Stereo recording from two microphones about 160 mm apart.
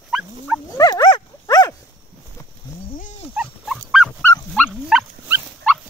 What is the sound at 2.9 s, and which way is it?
Dog, 50° left (ahead or behind).